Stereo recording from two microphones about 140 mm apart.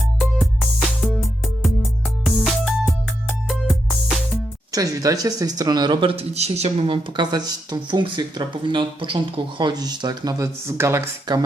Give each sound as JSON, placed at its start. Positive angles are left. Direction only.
{"t": 0.2, "sound": "music", "side_deg": 0}
{"t": 2.2, "sound": "music", "side_deg": 0}
{"t": 4.7, "sound": "speech", "side_deg": -25}